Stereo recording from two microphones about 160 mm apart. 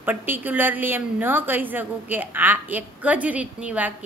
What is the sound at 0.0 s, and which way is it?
A woman's voice, 10° right (ahead or behind).